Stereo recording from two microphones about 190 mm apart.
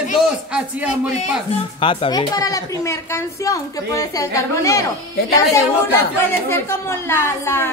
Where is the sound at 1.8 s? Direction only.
25° left (ahead or behind).